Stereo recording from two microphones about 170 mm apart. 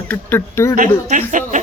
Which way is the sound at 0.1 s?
10° left (ahead or behind).